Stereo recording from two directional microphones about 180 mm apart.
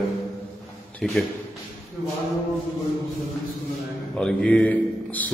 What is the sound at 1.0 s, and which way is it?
Speech, 5° left (ahead or behind).